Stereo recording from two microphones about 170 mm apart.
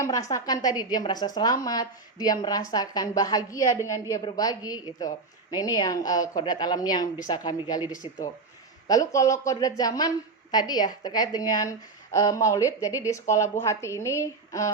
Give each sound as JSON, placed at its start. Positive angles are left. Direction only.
{"t": 0.0, "sound": "a woman's voice", "side_deg": 20}
{"t": 8.9, "sound": "a woman's voice", "side_deg": 20}